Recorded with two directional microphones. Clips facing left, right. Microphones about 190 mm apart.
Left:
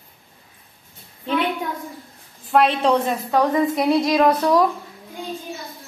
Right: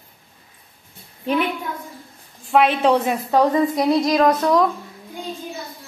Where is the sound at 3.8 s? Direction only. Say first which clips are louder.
Even; 5° left (ahead or behind).